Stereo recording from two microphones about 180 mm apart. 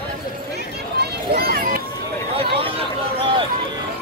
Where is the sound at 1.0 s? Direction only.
55° right (ahead or behind).